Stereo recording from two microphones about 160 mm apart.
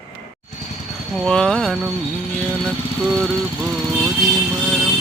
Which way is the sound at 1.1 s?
5° left (ahead or behind).